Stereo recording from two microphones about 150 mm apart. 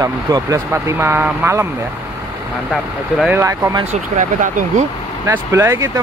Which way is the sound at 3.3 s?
15° right (ahead or behind).